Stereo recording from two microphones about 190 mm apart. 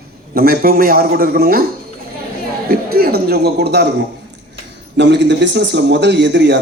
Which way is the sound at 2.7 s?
55° right (ahead or behind).